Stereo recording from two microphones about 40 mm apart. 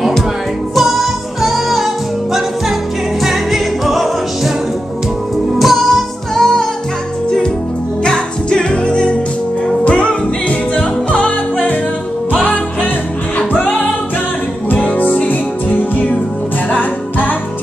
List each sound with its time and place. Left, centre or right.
0.7 s music: centre
3.2 s music: centre
5.6 s music: centre
6.3 s music: centre
8.0 s music: centre
12.3 s music: left
14.7 s music: left